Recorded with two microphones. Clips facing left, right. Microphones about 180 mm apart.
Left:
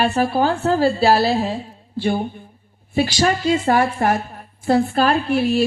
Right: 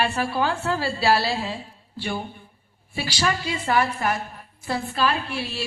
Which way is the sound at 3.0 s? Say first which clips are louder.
Left 8 dB; 45° left (ahead or behind).